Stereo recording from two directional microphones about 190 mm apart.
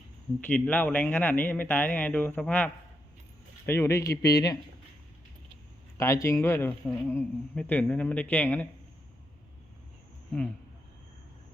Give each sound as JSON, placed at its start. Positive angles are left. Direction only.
{"t": 0.4, "sound": "speech", "side_deg": 10}
{"t": 3.7, "sound": "speech", "side_deg": 15}
{"t": 6.0, "sound": "speech", "side_deg": 15}